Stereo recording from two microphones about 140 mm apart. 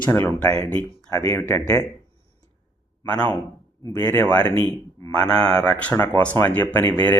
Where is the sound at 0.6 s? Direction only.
10° left (ahead or behind).